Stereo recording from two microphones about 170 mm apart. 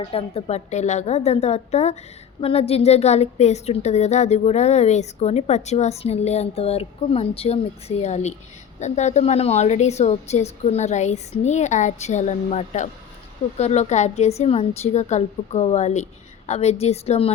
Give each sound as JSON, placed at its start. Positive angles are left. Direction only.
{"t": 0.1, "sound": "a woman's voice", "side_deg": 35}